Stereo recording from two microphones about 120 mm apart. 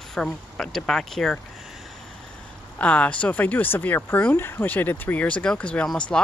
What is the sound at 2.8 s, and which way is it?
Speech, 10° left (ahead or behind).